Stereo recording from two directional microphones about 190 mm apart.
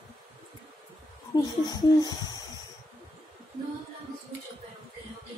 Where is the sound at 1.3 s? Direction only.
20° left (ahead or behind).